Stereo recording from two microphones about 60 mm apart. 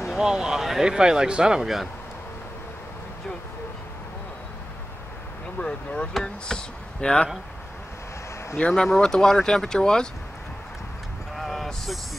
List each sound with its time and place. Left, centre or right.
0.2 s speech: centre
5.6 s speech: centre
8.5 s speech: centre
11.3 s vehicle: centre